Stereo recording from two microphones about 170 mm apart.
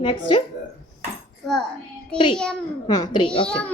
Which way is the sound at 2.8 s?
25° left (ahead or behind).